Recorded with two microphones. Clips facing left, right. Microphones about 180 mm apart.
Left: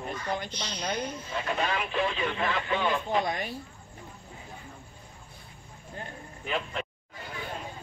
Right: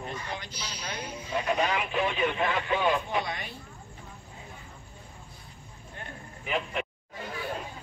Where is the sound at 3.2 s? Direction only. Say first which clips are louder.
Left 5 dB; 45° left (ahead or behind).